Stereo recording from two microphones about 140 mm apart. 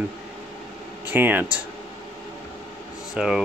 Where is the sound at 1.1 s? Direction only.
15° right (ahead or behind).